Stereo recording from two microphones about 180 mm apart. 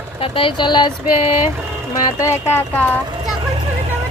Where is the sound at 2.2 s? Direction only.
15° left (ahead or behind).